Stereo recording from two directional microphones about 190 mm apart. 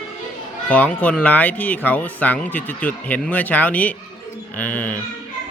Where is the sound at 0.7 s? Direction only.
10° left (ahead or behind).